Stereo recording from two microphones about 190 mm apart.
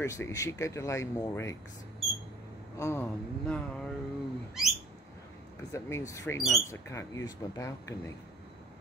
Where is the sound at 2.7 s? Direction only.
15° left (ahead or behind).